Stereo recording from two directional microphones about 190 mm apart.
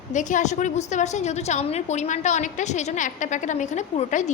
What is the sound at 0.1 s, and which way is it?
A woman's voice, 40° left (ahead or behind).